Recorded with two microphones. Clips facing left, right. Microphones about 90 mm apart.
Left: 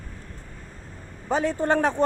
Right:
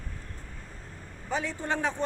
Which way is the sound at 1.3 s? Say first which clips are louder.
Left 9 dB; 45° left (ahead or behind).